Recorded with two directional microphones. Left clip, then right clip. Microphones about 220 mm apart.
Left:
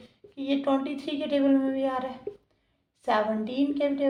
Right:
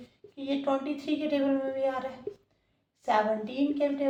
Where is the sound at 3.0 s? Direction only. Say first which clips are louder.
Left 1 dB; 40° left (ahead or behind).